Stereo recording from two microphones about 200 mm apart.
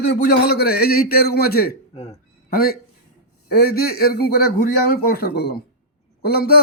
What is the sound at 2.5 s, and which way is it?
Speech, 50° left (ahead or behind).